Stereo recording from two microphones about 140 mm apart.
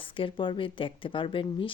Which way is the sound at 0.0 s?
35° left (ahead or behind).